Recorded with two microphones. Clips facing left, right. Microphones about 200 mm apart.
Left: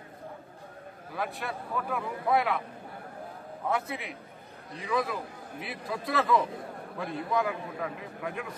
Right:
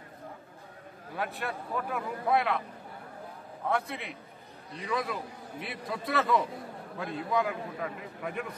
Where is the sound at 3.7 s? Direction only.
Centre (ahead or behind).